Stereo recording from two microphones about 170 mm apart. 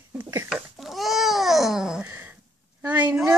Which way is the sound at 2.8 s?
10° right (ahead or behind).